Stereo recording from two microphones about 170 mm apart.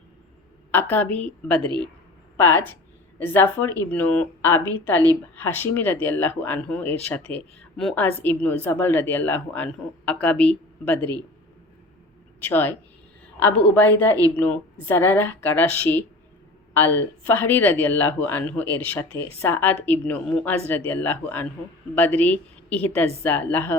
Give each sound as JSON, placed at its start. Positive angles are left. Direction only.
{"t": 0.7, "sound": "speech", "side_deg": 10}
{"t": 1.6, "sound": "a man's voice", "side_deg": -25}
{"t": 2.4, "sound": "speech", "side_deg": 10}
{"t": 12.4, "sound": "speech", "side_deg": 10}